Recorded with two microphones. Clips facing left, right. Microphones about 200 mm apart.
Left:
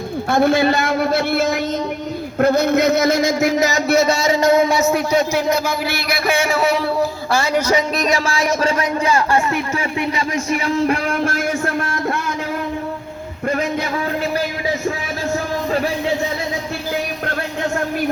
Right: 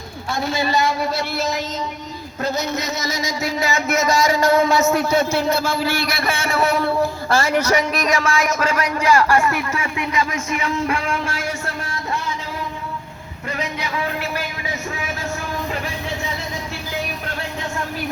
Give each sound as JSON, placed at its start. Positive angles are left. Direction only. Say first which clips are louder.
{"t": 0.3, "sound": "a man's voice", "louder": "left 8 dB", "side_deg": 55}
{"t": 6.1, "sound": "a man's voice", "louder": "left 3 dB", "side_deg": 0}
{"t": 7.5, "sound": "a man's voice", "louder": "left 1 dB", "side_deg": 20}
{"t": 11.2, "sound": "speech", "louder": "left 7 dB", "side_deg": 50}
{"t": 13.5, "sound": "speech", "louder": "left 7 dB", "side_deg": 50}